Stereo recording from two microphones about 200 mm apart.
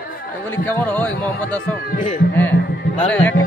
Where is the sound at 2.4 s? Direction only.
10° left (ahead or behind).